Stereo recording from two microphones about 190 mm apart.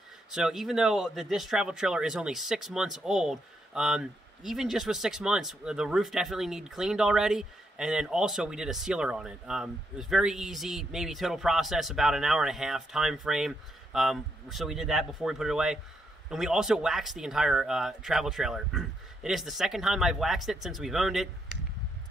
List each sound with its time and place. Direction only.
0.3 s speech: 5° right (ahead or behind)